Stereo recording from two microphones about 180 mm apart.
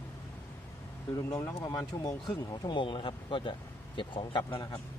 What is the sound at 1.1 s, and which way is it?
Speech, 15° left (ahead or behind).